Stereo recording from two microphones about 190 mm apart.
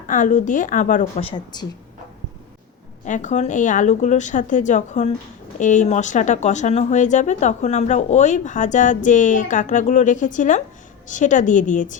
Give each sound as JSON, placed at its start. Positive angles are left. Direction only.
{"t": 0.1, "sound": "speech", "side_deg": 40}
{"t": 3.0, "sound": "speech", "side_deg": 40}